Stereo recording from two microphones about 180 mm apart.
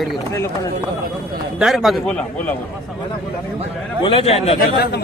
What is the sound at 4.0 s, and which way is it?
Speech, 30° left (ahead or behind).